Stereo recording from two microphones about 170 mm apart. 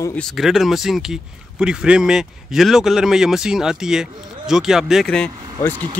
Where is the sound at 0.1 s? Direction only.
5° left (ahead or behind).